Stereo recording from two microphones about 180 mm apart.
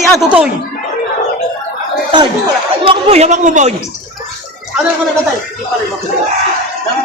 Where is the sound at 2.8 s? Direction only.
35° right (ahead or behind).